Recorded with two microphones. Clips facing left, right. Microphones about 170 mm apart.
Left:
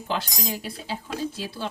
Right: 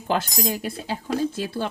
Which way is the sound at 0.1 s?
50° right (ahead or behind).